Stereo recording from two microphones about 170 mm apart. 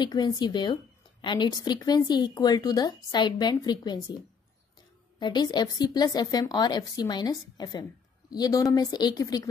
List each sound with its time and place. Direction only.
0.0 s speech: 25° left (ahead or behind)
5.2 s speech: 25° left (ahead or behind)